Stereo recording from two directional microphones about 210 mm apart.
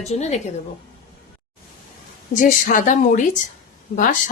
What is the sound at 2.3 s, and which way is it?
A woman's voice, 40° left (ahead or behind).